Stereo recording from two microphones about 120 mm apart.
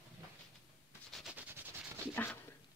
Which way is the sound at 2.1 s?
15° left (ahead or behind).